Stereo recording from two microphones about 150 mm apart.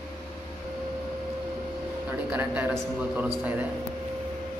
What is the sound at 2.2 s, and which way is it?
Speech, 10° right (ahead or behind).